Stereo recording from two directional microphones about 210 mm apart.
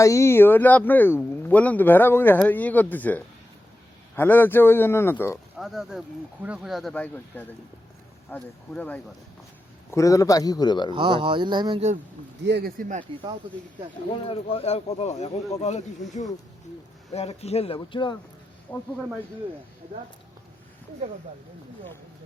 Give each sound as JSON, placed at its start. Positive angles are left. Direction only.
{"t": 0.0, "sound": "speech", "side_deg": 15}
{"t": 5.5, "sound": "speech", "side_deg": 0}
{"t": 10.9, "sound": "speech", "side_deg": -20}
{"t": 12.5, "sound": "speech", "side_deg": -50}
{"t": 14.3, "sound": "speech", "side_deg": 25}
{"t": 18.7, "sound": "speech", "side_deg": 10}